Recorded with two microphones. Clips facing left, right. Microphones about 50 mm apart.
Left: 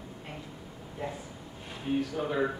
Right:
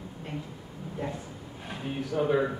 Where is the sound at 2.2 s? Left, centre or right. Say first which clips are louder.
Right 6 dB; centre.